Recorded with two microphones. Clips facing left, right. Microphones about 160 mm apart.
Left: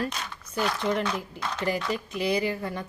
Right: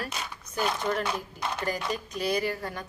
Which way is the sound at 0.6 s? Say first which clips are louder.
Left 2 dB; 15° right (ahead or behind).